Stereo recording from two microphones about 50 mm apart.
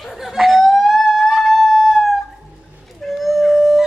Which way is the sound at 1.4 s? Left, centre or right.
Centre.